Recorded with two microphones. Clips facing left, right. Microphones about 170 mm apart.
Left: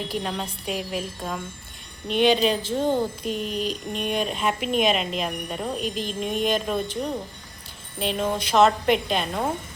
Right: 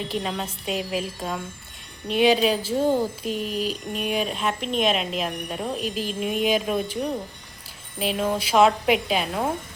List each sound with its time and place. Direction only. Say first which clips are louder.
0.1 s speech: right 1 dB; centre (ahead or behind)